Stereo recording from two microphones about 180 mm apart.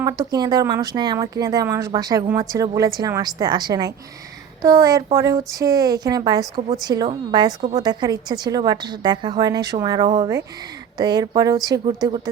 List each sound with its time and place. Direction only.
0.0 s a woman's voice: 20° right (ahead or behind)